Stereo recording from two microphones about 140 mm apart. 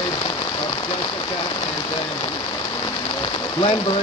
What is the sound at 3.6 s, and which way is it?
Speech, 35° left (ahead or behind).